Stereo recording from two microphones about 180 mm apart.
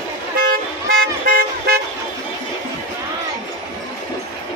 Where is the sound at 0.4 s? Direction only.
55° right (ahead or behind).